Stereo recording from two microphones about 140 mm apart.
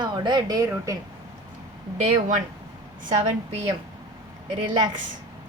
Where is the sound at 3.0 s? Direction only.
40° right (ahead or behind).